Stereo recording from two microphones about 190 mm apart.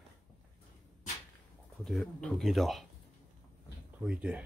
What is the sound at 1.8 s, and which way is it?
Speech, 5° left (ahead or behind).